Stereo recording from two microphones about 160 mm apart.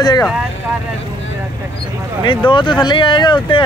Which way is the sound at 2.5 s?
30° left (ahead or behind).